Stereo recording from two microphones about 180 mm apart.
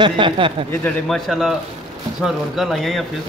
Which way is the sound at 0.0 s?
25° right (ahead or behind).